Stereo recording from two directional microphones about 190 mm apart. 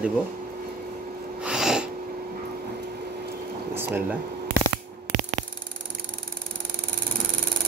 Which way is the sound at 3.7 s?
10° right (ahead or behind).